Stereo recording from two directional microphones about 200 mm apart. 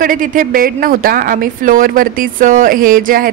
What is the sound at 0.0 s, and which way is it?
A woman's voice, 45° right (ahead or behind).